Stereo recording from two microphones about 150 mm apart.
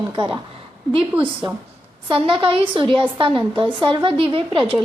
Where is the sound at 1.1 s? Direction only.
10° right (ahead or behind).